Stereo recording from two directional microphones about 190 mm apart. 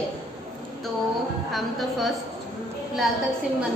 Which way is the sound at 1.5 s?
Centre (ahead or behind).